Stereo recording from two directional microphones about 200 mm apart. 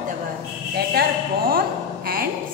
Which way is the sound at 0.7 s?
50° right (ahead or behind).